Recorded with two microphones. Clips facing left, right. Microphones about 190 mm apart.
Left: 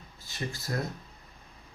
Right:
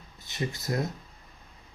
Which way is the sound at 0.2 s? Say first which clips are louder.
Right 4 dB; 20° right (ahead or behind).